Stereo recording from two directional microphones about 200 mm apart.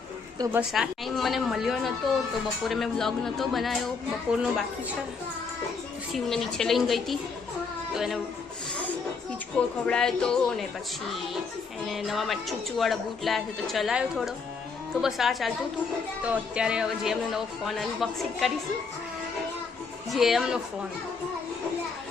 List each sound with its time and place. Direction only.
0.3 s a woman's voice: 15° right (ahead or behind)
0.7 s speech: centre (ahead or behind)
6.1 s speech: centre (ahead or behind)
9.6 s speech: 5° left (ahead or behind)
11.9 s speech: centre (ahead or behind)
20.1 s speech: centre (ahead or behind)